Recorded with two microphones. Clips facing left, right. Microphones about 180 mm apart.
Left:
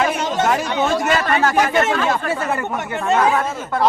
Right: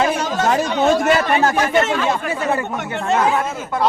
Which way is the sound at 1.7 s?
20° right (ahead or behind).